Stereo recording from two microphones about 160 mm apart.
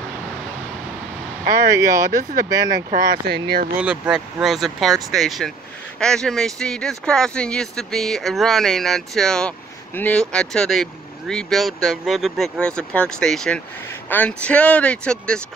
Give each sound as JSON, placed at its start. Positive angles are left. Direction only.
{"t": 1.7, "sound": "speech", "side_deg": -20}
{"t": 2.9, "sound": "speech", "side_deg": -75}
{"t": 3.8, "sound": "speech", "side_deg": -5}